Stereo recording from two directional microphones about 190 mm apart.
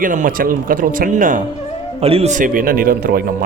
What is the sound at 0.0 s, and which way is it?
Speech, 45° right (ahead or behind).